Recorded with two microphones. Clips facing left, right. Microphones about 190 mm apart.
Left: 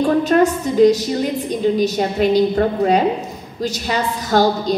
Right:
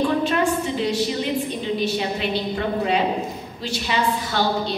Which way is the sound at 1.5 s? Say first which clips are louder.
Left 7 dB; 45° left (ahead or behind).